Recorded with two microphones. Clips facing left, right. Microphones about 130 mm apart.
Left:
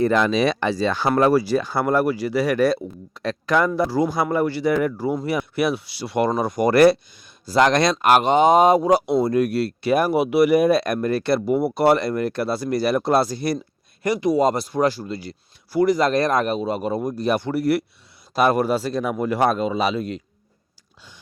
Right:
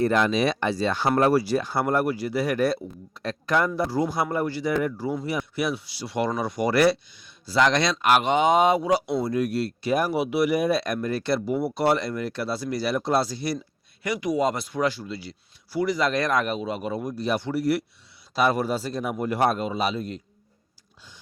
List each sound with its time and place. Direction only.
0.3 s speech: 90° left; by 13.6 s 50° left (ahead or behind)
14.0 s speech: 35° left (ahead or behind); by 20.2 s 90° left